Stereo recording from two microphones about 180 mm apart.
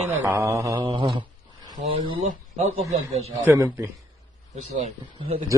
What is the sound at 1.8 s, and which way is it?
A man's voice, 30° right (ahead or behind).